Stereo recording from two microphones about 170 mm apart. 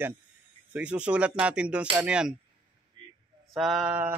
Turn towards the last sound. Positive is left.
turn(degrees=-10)  # may be behind; listen again after turning